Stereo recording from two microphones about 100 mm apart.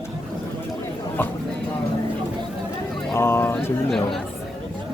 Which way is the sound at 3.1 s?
25° left (ahead or behind).